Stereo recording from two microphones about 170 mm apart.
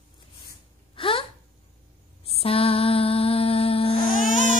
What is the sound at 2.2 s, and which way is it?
Mantra, 35° left (ahead or behind).